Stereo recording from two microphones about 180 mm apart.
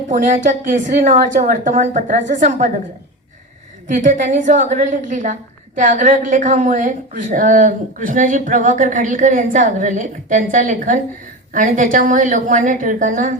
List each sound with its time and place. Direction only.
0.1 s a woman's voice: 45° right (ahead or behind)
3.8 s a woman's voice: 45° right (ahead or behind)